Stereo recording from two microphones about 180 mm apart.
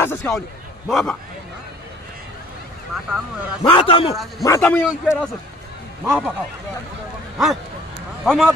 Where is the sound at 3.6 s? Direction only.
30° left (ahead or behind).